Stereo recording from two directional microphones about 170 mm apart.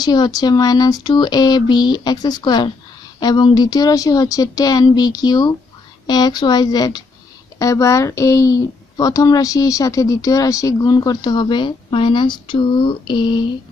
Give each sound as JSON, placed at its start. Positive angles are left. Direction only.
{"t": 0.0, "sound": "a woman's voice", "side_deg": 25}